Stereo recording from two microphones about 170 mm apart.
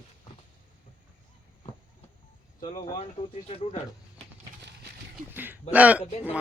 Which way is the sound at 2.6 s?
30° left (ahead or behind).